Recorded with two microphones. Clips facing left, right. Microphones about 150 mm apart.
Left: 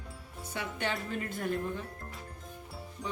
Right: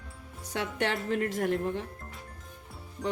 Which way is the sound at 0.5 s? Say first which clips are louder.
Right 5 dB; 75° right (ahead or behind).